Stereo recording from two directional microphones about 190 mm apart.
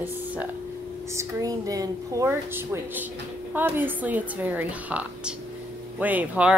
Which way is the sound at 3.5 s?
10° right (ahead or behind).